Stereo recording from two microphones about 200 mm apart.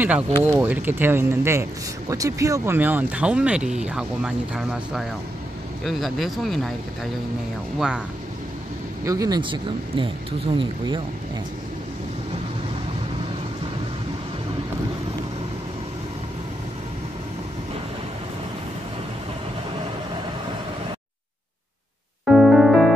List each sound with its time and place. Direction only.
0.0 s speech: 10° right (ahead or behind)
9.0 s speech: 15° right (ahead or behind)
22.2 s music: 5° right (ahead or behind)